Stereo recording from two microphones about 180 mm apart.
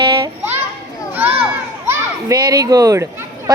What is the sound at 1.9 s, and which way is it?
A child's voice, 20° right (ahead or behind).